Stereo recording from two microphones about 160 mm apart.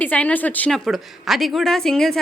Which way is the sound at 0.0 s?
10° left (ahead or behind).